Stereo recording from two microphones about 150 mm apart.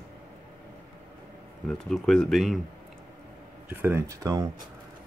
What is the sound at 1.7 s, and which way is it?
Speech, centre (ahead or behind).